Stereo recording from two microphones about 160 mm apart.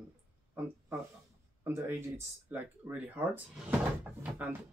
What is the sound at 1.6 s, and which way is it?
Speech, 15° right (ahead or behind).